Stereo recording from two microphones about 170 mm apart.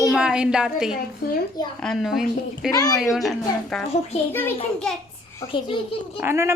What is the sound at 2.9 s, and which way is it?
Speech, centre (ahead or behind).